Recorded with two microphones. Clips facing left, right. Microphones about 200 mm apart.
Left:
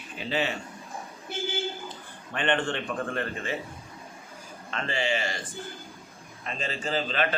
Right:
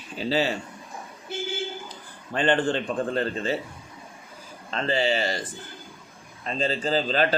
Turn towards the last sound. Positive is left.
turn(degrees=-35)  # may be behind; listen again after turning